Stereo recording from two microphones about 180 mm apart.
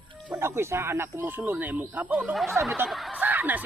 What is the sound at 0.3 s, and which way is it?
Speech, 15° right (ahead or behind).